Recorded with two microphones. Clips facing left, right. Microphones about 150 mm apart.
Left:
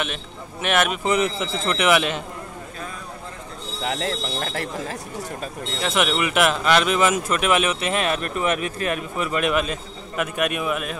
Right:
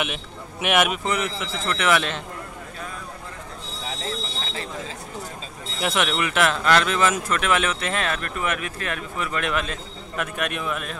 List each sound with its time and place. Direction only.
0.0 s a man's voice: 10° right (ahead or behind)
1.0 s speech: 25° left (ahead or behind)
1.8 s speech: 10° left (ahead or behind)
3.8 s speech: 70° left (ahead or behind)
5.9 s speech: 5° left (ahead or behind)